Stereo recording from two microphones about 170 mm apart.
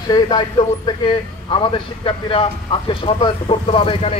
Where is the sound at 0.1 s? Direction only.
25° left (ahead or behind).